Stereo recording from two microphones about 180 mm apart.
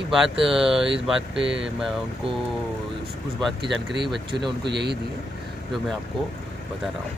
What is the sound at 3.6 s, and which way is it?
Speech, 70° right (ahead or behind).